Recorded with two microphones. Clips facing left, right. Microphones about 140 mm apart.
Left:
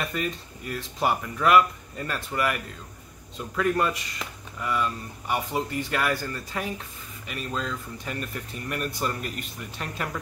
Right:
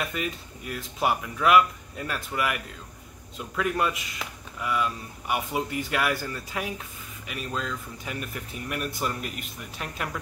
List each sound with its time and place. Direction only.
0.0 s speech: centre (ahead or behind)